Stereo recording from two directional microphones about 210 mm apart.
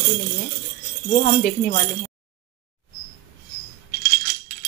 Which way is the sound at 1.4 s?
40° left (ahead or behind).